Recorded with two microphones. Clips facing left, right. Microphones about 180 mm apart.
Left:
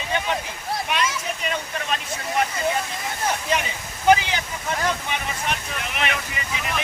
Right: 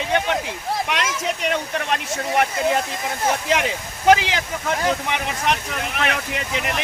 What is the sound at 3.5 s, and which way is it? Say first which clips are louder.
Speech: right 4 dB; 90° right.